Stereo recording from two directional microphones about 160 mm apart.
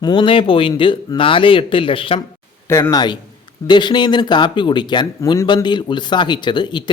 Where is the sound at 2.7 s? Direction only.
20° left (ahead or behind).